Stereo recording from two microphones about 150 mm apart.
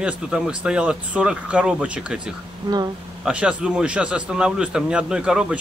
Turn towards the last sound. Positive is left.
turn(degrees=-5)  # may be behind; listen again after turning